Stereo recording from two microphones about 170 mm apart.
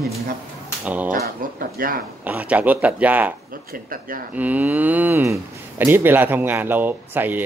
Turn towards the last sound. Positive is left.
turn(degrees=-10)  # may be behind; listen again after turning